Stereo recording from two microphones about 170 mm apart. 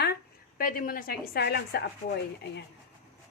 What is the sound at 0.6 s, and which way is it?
Speech, 55° left (ahead or behind).